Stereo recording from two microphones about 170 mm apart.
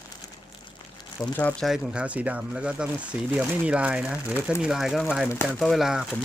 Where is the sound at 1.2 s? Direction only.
5° left (ahead or behind).